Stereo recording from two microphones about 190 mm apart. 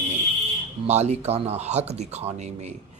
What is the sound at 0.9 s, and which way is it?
Speech, 35° right (ahead or behind).